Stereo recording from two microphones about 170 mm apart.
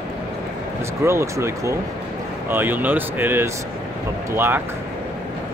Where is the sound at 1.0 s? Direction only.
15° right (ahead or behind).